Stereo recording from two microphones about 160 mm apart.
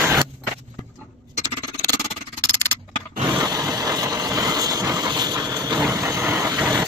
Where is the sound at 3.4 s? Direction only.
25° right (ahead or behind).